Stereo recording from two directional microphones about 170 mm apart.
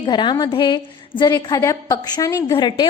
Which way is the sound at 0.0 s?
25° left (ahead or behind).